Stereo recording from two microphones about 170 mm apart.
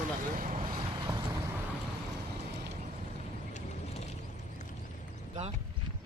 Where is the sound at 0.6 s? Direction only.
25° right (ahead or behind).